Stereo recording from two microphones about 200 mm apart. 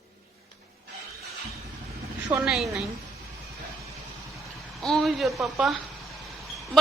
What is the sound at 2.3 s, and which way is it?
Speech, 5° right (ahead or behind).